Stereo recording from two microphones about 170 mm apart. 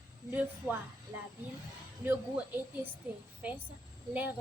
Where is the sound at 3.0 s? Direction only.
10° right (ahead or behind).